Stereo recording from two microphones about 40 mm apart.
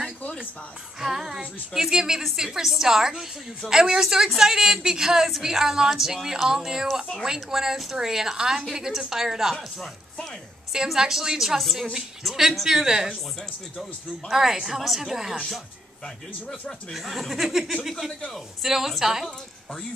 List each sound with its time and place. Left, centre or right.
1.0 s child singing: centre
1.7 s a woman's voice: centre
11.0 s a woman's voice: centre
14.3 s a woman's voice: centre
16.9 s a woman's voice: centre